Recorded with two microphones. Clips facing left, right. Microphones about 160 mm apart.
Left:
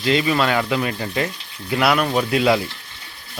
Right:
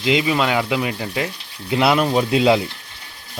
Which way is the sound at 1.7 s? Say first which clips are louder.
Right 2 dB; 25° right (ahead or behind).